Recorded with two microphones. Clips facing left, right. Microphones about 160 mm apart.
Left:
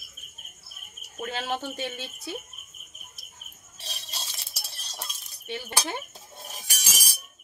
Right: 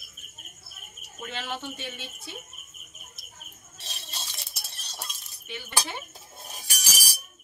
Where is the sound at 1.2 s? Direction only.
40° left (ahead or behind).